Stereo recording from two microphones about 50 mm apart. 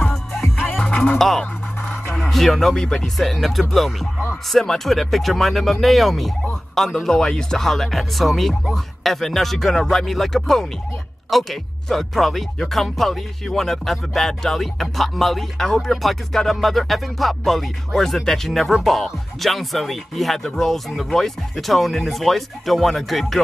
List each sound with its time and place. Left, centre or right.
0.1 s music: centre
0.8 s music: centre
1.1 s music: centre